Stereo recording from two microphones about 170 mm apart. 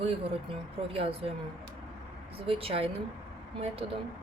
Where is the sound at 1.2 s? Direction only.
30° right (ahead or behind).